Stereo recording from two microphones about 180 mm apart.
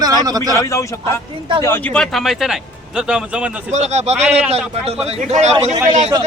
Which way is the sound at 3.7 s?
40° right (ahead or behind).